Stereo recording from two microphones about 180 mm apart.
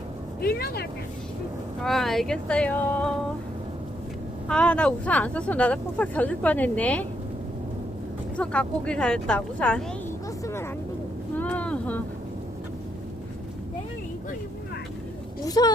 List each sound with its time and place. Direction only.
0.4 s speech: 60° left (ahead or behind)
1.8 s speech: centre (ahead or behind)
4.4 s speech: 5° left (ahead or behind)
8.4 s speech: 5° left (ahead or behind)
10.4 s vehicle: 15° left (ahead or behind)
11.3 s a sound: 10° left (ahead or behind)
15.4 s speech: 20° left (ahead or behind)